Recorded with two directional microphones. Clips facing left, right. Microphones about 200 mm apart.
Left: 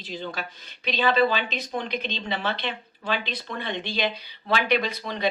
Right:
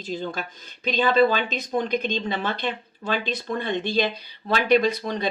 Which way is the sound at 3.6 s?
45° right (ahead or behind).